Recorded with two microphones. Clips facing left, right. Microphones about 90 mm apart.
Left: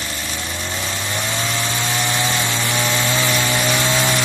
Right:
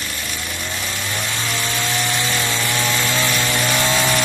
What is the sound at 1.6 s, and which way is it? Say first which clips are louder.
Chainsaw: left 1 dB; 20° left (ahead or behind).